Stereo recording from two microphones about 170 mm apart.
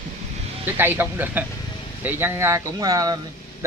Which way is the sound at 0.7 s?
15° right (ahead or behind).